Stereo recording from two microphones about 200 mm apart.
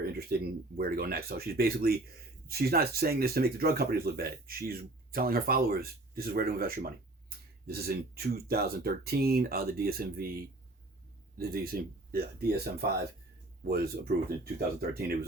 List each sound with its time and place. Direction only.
0.0 s speech: 50° right (ahead or behind)
11.3 s speech: 50° right (ahead or behind)
13.7 s speech: 50° right (ahead or behind)